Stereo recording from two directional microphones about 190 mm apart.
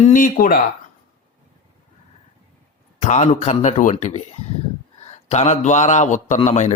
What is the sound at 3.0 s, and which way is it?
Speech, 40° left (ahead or behind).